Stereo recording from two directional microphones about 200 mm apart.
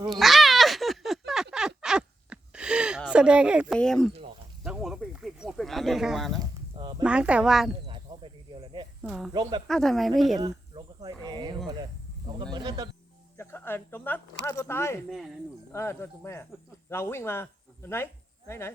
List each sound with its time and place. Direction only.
0.0 s a sound: centre (ahead or behind)
3.1 s speech: 5° right (ahead or behind)
4.6 s a sound: 5° right (ahead or behind)
6.4 s a sound: 25° right (ahead or behind)
7.0 s speech: 5° right (ahead or behind)
7.9 s cricket: 25° right (ahead or behind)
9.0 s speech: centre (ahead or behind)
9.3 s speech: 20° right (ahead or behind)
9.6 s speech: centre (ahead or behind)
10.3 s a sound: 20° right (ahead or behind)
12.5 s music: 20° right (ahead or behind)
13.3 s speech: 10° left (ahead or behind)